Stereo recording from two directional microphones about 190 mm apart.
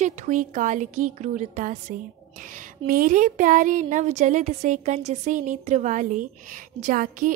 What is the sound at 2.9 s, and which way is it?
A woman's voice, 45° right (ahead or behind).